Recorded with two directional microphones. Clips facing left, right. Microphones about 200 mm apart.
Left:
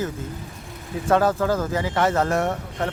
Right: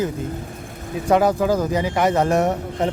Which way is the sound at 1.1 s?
15° right (ahead or behind).